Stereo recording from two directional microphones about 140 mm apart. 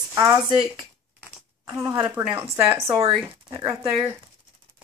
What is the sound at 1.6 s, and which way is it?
Speech, 25° right (ahead or behind).